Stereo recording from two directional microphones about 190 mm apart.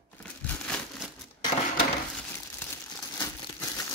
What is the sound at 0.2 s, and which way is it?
Crumpling, 5° left (ahead or behind).